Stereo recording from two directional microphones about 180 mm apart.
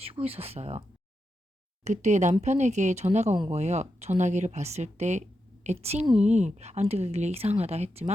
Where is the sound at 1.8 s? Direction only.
40° right (ahead or behind).